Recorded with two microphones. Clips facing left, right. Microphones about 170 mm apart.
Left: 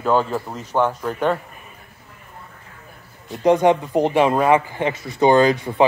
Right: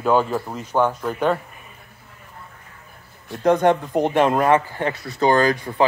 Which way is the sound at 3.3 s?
10° left (ahead or behind).